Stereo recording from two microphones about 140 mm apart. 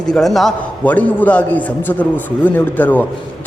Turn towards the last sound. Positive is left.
turn(degrees=10)  # may be behind; listen again after turning